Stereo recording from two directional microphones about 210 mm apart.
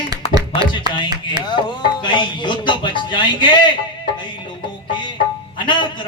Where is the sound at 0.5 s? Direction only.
25° left (ahead or behind).